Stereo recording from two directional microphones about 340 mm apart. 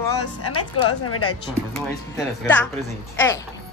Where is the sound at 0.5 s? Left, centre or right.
Left.